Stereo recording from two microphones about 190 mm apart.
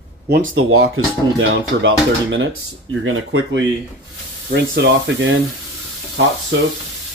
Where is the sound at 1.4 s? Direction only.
75° right (ahead or behind).